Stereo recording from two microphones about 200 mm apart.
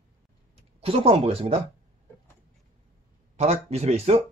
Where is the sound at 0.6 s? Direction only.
30° right (ahead or behind).